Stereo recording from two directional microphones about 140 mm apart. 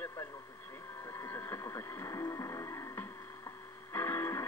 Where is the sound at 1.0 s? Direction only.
20° left (ahead or behind).